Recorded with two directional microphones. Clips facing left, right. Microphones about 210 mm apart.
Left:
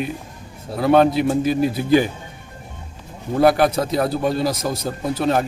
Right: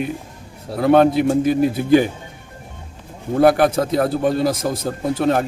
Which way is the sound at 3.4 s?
55° right (ahead or behind).